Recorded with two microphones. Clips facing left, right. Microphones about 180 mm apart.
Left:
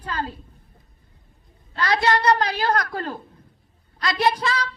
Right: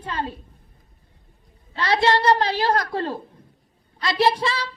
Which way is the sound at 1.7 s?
25° right (ahead or behind).